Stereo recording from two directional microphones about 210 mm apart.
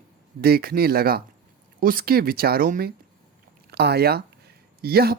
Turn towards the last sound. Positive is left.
turn(degrees=-45)  # may be behind; listen again after turning